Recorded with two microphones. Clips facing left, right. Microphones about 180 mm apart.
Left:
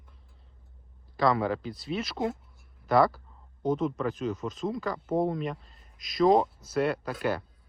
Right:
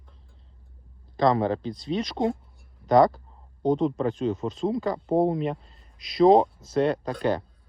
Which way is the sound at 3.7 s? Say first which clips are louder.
Right 4 dB; 35° right (ahead or behind).